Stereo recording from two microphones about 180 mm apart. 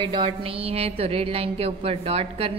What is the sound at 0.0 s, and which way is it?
A woman's voice, 30° right (ahead or behind).